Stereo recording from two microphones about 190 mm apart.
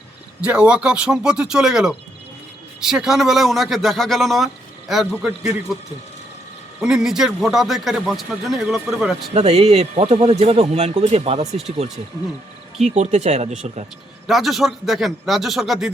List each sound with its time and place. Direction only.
0.4 s speech: 5° right (ahead or behind)
6.8 s speech: 5° right (ahead or behind)
9.3 s speech: 35° right (ahead or behind)
12.8 s speech: 40° right (ahead or behind)
14.3 s speech: centre (ahead or behind)